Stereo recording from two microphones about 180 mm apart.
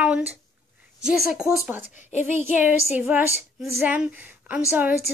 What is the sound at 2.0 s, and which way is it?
Speech, 40° left (ahead or behind).